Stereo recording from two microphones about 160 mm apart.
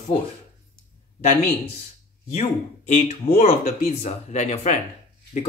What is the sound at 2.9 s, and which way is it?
Speech, 45° left (ahead or behind).